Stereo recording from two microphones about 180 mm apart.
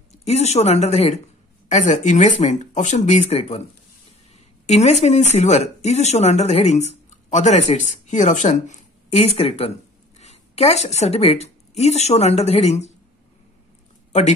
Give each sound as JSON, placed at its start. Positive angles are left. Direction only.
{"t": 0.2, "sound": "speech", "side_deg": 35}
{"t": 4.6, "sound": "speech", "side_deg": 40}